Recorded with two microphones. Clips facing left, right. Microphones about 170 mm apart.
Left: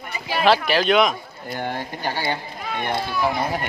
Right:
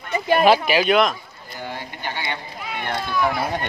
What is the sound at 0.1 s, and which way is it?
Speech, 50° right (ahead or behind).